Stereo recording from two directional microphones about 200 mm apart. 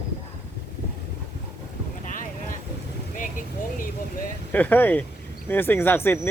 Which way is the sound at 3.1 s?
40° left (ahead or behind).